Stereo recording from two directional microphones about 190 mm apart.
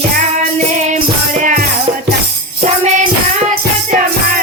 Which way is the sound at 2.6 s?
40° right (ahead or behind).